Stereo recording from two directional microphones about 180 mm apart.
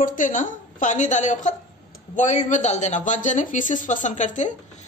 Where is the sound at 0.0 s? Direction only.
45° left (ahead or behind).